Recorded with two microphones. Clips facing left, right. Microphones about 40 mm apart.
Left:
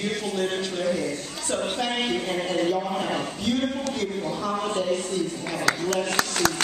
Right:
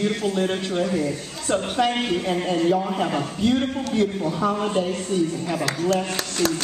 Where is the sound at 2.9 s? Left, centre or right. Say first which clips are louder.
Right 3 dB; centre.